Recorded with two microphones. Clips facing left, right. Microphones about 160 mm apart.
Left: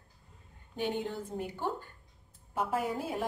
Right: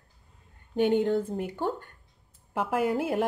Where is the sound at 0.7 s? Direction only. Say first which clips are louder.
Right 11 dB; 60° right (ahead or behind).